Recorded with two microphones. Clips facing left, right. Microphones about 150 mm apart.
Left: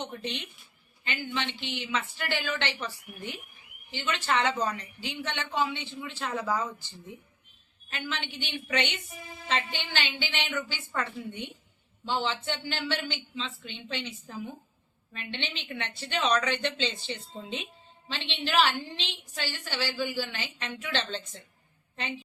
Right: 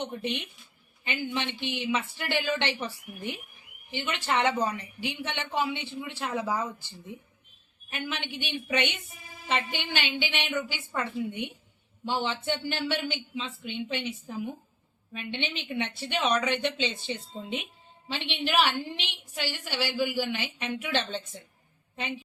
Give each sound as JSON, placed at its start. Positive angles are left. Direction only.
{"t": 0.2, "sound": "a woman's voice", "side_deg": -15}
{"t": 7.9, "sound": "a woman's voice", "side_deg": -15}
{"t": 16.3, "sound": "speech", "side_deg": -20}
{"t": 16.6, "sound": "a woman's voice", "side_deg": -10}